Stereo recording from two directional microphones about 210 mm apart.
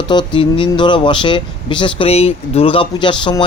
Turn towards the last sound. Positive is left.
turn(degrees=20)  # may be behind; listen again after turning